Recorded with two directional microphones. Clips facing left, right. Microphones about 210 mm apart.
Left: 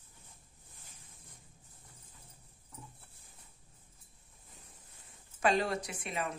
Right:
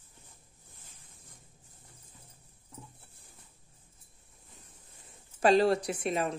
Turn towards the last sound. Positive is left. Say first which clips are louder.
# right 7 dB
turn(degrees=-35)  # may be behind; listen again after turning